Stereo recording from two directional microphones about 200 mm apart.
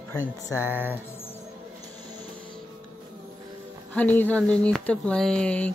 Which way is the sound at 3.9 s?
10° left (ahead or behind).